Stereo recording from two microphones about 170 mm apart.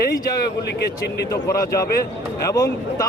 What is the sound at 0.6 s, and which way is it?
Speech, 75° left (ahead or behind).